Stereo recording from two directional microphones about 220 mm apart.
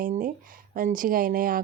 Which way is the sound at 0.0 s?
40° right (ahead or behind).